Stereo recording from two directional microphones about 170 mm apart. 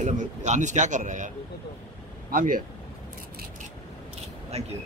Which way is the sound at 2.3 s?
55° right (ahead or behind).